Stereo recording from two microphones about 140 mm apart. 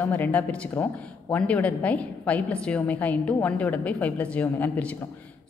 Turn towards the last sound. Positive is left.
turn(degrees=10)  # may be behind; listen again after turning